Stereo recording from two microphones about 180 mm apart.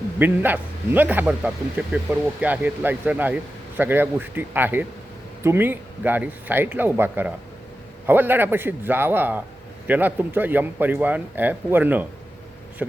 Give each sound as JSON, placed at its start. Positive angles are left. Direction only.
{"t": 0.2, "sound": "a man's voice", "side_deg": -10}